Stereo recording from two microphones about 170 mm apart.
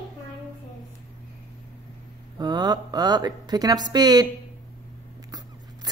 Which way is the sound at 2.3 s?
25° right (ahead or behind).